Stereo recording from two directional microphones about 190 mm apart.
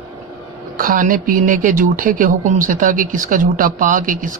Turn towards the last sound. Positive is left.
turn(degrees=-45)  # may be behind; listen again after turning